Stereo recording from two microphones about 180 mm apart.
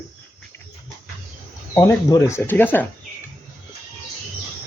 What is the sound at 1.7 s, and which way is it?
Speech, 15° left (ahead or behind).